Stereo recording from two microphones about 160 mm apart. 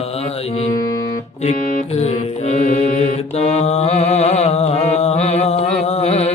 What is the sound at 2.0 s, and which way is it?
Mantra, 45° left (ahead or behind).